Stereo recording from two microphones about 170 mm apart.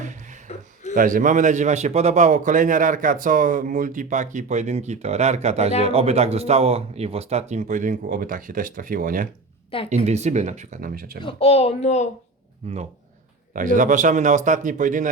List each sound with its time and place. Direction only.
0.0 s a sound: 45° right (ahead or behind)
0.9 s a man's voice: 50° right (ahead or behind)
9.9 s a man's voice: 40° right (ahead or behind); by 11.2 s 55° right (ahead or behind)
11.2 s a child's voice: 35° left (ahead or behind)
12.6 s speech: 40° right (ahead or behind)
13.5 s a man's voice: 50° right (ahead or behind)